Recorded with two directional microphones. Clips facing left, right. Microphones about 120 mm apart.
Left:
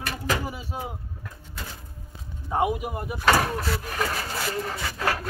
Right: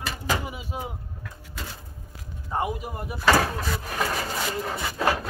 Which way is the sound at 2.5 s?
10° left (ahead or behind).